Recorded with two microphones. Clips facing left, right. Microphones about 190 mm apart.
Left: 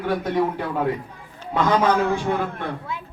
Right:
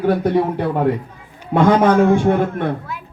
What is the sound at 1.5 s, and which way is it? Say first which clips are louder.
Speech: right 6 dB; 55° right (ahead or behind).